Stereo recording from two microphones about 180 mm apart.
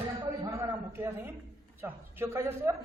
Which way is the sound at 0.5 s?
15° right (ahead or behind).